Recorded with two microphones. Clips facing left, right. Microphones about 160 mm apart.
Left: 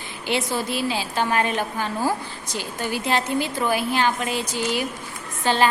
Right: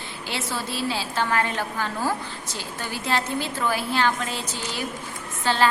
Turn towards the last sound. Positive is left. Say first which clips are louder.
# left 2 dB
turn(degrees=15)  # may be behind; listen again after turning